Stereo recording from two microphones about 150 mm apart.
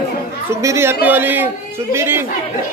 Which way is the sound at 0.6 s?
20° right (ahead or behind).